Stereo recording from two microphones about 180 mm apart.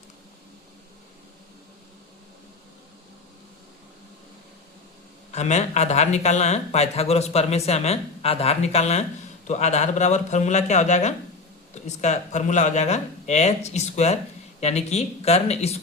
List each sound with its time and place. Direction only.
5.3 s speech: 40° left (ahead or behind)